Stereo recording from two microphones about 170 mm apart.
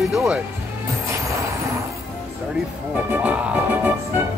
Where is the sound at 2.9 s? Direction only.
10° right (ahead or behind).